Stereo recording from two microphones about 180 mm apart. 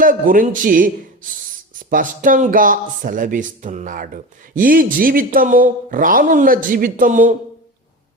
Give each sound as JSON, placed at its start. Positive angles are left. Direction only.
{"t": 0.0, "sound": "speech", "side_deg": -50}